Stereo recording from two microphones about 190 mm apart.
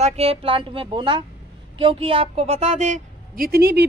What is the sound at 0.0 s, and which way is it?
Speech, 35° right (ahead or behind).